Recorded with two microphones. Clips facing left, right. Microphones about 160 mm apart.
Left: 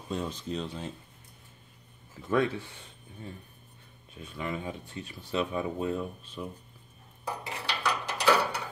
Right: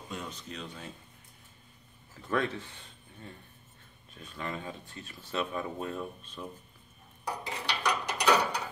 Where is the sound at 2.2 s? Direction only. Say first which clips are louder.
Left 4 dB; 10° left (ahead or behind).